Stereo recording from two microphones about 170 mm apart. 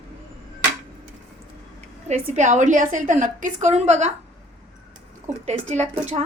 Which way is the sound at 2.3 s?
45° right (ahead or behind).